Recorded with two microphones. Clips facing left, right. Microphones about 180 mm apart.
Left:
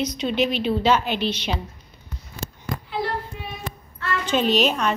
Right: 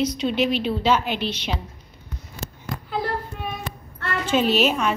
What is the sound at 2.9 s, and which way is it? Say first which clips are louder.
Child singing: right 1 dB; 45° right (ahead or behind).